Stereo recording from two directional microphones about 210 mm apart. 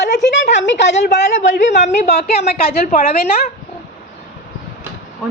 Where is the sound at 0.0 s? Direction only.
55° left (ahead or behind).